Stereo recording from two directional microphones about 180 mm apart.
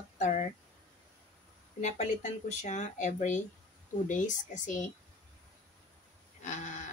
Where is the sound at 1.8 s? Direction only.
40° left (ahead or behind).